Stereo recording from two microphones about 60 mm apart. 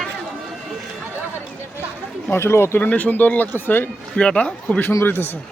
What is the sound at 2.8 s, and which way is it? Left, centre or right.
Speech, left.